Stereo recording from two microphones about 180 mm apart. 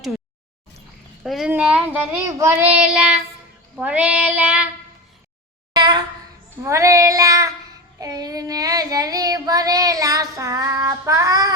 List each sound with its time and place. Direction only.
1.2 s speech: centre (ahead or behind)
5.7 s a sound: 25° right (ahead or behind)
6.6 s speech: 15° right (ahead or behind)
7.9 s child singing: 20° right (ahead or behind)